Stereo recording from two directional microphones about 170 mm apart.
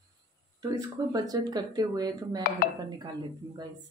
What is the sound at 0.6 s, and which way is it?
Speech, 20° right (ahead or behind).